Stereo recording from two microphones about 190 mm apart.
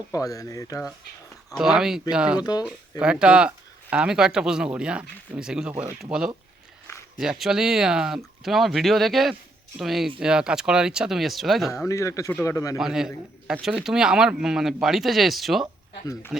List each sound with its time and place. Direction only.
0.2 s speech: 20° left (ahead or behind)
1.5 s speech: centre (ahead or behind)
2.4 s speech: 20° left (ahead or behind)
3.0 s speech: 5° right (ahead or behind)
11.9 s speech: 15° left (ahead or behind)
12.8 s speech: centre (ahead or behind)